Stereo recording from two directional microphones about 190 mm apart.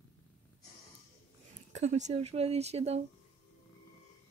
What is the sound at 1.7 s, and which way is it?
Speech, 35° right (ahead or behind).